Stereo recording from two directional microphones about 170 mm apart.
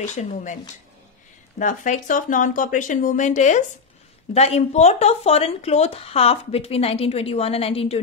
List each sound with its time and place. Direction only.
0.1 s speech: 45° left (ahead or behind)
1.6 s speech: 50° left (ahead or behind)